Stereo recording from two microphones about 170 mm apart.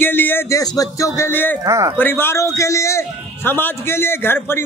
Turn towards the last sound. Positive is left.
turn(degrees=15)  # may be behind; listen again after turning